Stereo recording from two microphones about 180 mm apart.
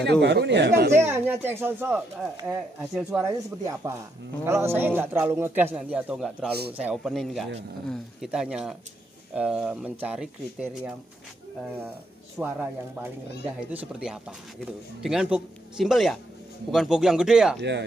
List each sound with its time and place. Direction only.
0.0 s speech: 70° right (ahead or behind)
0.9 s speech: 10° right (ahead or behind)
3.1 s speech: 15° right (ahead or behind)
12.4 s speech: 10° right (ahead or behind)
17.6 s speech: 70° right (ahead or behind)